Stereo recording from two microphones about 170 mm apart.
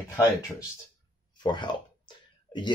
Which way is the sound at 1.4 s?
25° left (ahead or behind).